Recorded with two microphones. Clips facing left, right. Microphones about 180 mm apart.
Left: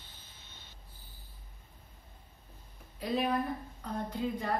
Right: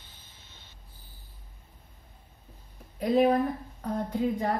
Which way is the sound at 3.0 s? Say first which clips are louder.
Right 9 dB; 50° right (ahead or behind).